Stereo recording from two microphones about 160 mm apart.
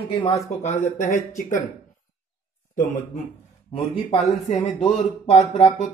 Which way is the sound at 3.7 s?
40° left (ahead or behind).